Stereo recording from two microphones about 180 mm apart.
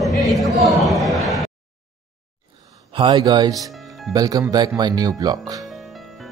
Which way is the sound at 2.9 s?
25° right (ahead or behind).